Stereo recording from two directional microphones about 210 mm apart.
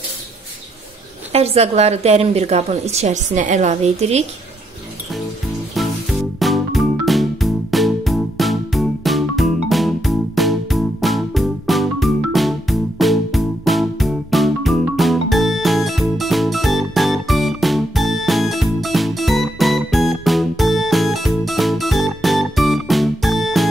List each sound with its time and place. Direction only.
1.3 s a woman's voice: 30° right (ahead or behind)
5.8 s music: centre (ahead or behind)